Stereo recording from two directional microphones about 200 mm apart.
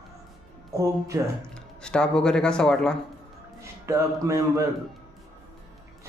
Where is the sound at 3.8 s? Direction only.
15° right (ahead or behind).